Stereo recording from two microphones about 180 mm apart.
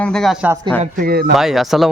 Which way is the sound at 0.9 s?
60° right (ahead or behind).